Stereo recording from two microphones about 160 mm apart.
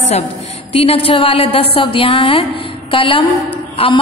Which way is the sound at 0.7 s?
35° left (ahead or behind).